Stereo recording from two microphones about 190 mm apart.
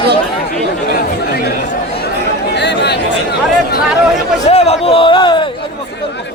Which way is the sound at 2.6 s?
65° left (ahead or behind).